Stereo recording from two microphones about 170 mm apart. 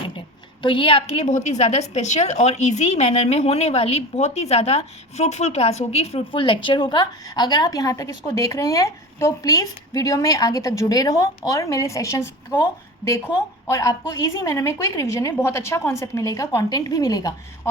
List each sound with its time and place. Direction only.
0.6 s a woman's voice: 30° left (ahead or behind)